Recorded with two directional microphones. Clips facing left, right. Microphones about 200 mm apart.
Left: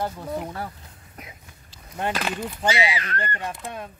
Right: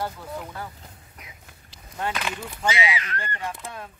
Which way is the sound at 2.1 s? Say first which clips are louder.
Left 4 dB; 35° left (ahead or behind).